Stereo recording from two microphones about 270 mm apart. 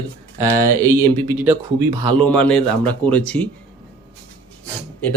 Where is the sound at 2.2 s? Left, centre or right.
Centre.